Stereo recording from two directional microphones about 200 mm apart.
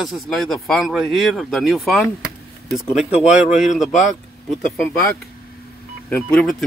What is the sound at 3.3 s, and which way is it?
Speech, 40° left (ahead or behind).